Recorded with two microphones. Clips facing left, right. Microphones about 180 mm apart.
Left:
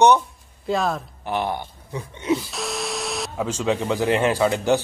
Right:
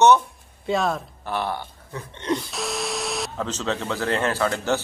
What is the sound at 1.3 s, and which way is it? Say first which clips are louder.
Speech: left 2 dB; 15° left (ahead or behind).